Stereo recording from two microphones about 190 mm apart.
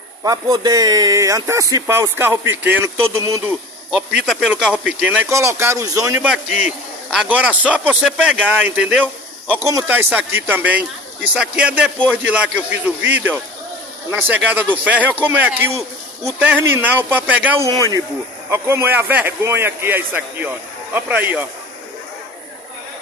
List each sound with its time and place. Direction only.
0.2 s speech: 20° right (ahead or behind)
4.3 s speech: 5° right (ahead or behind)
6.2 s a man's voice: 5° right (ahead or behind)
17.6 s speech: 20° right (ahead or behind)